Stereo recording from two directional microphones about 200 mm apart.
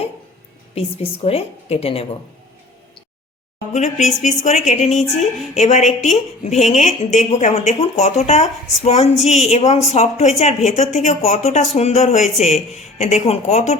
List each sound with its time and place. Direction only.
0.8 s a woman's voice: 30° left (ahead or behind)
3.7 s a woman's voice: 35° left (ahead or behind)